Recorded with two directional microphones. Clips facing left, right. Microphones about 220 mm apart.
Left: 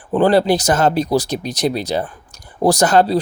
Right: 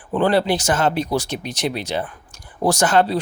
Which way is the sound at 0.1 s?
40° left (ahead or behind).